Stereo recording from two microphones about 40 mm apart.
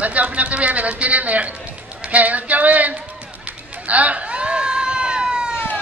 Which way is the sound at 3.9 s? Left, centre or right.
Right.